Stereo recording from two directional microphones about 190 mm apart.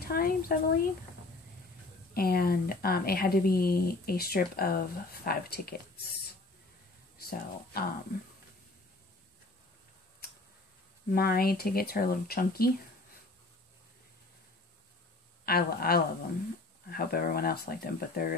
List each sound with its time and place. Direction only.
0.1 s speech: 50° left (ahead or behind)
2.1 s speech: 50° left (ahead or behind)
7.2 s speech: 55° left (ahead or behind)
11.1 s speech: 50° left (ahead or behind)
15.4 s speech: 55° left (ahead or behind)